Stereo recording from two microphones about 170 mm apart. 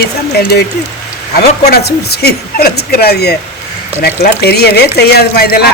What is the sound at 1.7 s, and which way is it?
A man's voice, 70° left (ahead or behind).